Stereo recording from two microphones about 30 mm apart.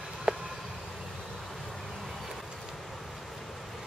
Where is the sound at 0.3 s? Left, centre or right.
Right.